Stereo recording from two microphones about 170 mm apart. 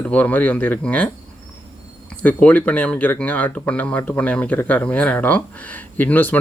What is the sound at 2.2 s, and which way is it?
Speech, 10° left (ahead or behind).